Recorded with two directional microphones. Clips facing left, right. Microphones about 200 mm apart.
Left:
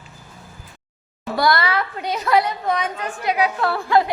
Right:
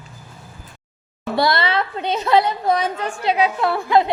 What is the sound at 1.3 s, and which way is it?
A woman's voice, 25° right (ahead or behind).